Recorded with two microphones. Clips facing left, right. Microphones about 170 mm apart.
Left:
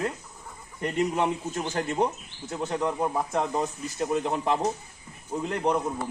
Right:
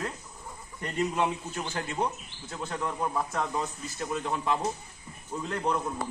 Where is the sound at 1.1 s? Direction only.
35° left (ahead or behind).